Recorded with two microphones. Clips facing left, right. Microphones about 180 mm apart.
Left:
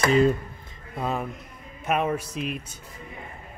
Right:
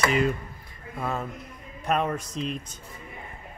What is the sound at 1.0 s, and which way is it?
Speech, 15° left (ahead or behind).